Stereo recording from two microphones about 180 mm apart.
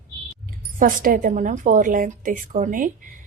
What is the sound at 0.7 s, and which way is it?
Speech, 50° right (ahead or behind).